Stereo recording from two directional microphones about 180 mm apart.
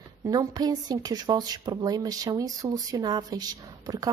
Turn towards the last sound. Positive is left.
turn(degrees=-20)  # may be behind; listen again after turning